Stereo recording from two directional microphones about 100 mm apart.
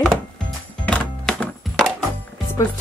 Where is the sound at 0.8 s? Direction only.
10° left (ahead or behind).